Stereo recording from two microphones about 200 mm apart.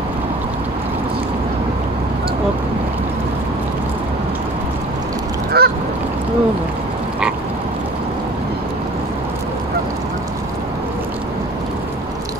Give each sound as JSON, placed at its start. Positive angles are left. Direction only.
{"t": 5.5, "sound": "goose", "side_deg": -50}